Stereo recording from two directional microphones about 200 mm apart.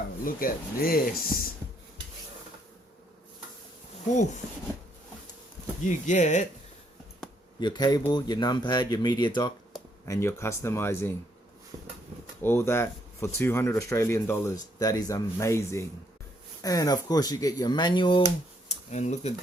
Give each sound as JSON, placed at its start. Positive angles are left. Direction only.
{"t": 0.3, "sound": "speech", "side_deg": 45}
{"t": 5.8, "sound": "speech", "side_deg": 40}
{"t": 7.6, "sound": "speech", "side_deg": 20}
{"t": 11.7, "sound": "a sound", "side_deg": -25}
{"t": 12.4, "sound": "speech", "side_deg": 10}
{"t": 18.7, "sound": "speech", "side_deg": 35}